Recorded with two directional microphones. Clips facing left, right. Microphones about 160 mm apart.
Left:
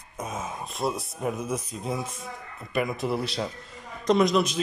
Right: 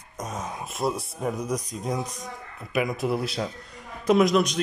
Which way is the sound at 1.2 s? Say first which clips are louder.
Right 1 dB; 5° left (ahead or behind).